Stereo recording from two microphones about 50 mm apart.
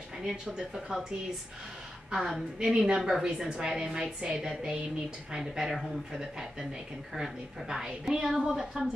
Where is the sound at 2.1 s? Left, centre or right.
Centre.